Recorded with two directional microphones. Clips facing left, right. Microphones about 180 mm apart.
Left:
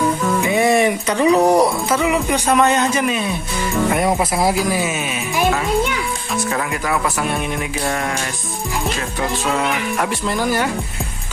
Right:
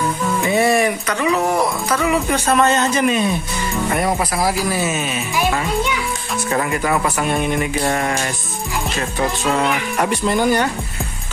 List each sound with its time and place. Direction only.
0.5 s speech: 15° left (ahead or behind); by 1.7 s 35° left (ahead or behind)
1.9 s a man's voice: 15° left (ahead or behind)
3.9 s speech: 20° left (ahead or behind)
6.5 s speech: centre (ahead or behind)
9.5 s speech: centre (ahead or behind)